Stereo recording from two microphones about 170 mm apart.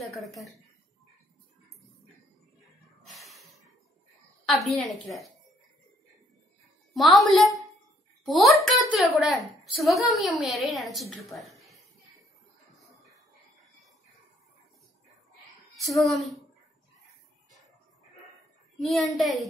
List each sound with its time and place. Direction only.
0.0 s speech: centre (ahead or behind)
3.0 s snort: centre (ahead or behind)
4.5 s a woman's voice: centre (ahead or behind)
6.9 s a woman's voice: centre (ahead or behind)
15.7 s a woman's voice: centre (ahead or behind)
18.8 s a child's voice: centre (ahead or behind)